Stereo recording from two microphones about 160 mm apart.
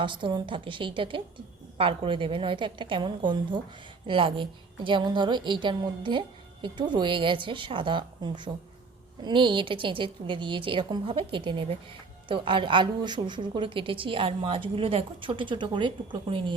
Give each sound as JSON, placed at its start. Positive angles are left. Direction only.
{"t": 0.0, "sound": "a woman's voice", "side_deg": -30}